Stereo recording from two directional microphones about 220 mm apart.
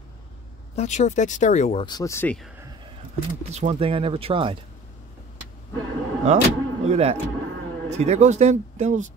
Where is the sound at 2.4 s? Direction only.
10° right (ahead or behind).